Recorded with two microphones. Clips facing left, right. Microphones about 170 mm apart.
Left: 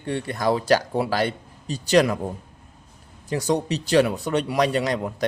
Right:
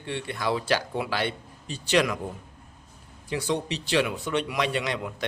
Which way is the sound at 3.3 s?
40° left (ahead or behind).